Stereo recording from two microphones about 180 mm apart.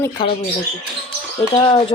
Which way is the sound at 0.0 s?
25° left (ahead or behind).